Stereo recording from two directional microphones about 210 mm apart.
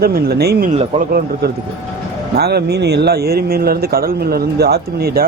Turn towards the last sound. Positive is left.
turn(degrees=-45)  # may be behind; listen again after turning